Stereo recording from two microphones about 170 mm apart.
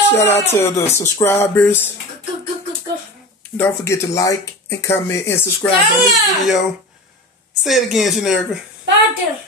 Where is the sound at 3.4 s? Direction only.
15° left (ahead or behind).